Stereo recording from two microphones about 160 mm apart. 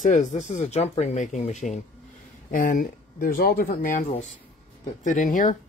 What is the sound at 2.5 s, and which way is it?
Speech, 60° left (ahead or behind).